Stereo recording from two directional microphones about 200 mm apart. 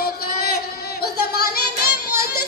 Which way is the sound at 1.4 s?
50° left (ahead or behind).